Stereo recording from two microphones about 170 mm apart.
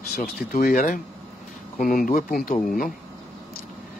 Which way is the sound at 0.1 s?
55° left (ahead or behind).